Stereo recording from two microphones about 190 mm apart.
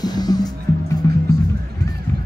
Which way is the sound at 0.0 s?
20° left (ahead or behind).